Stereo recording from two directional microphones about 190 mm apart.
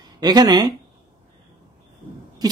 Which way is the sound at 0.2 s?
20° right (ahead or behind).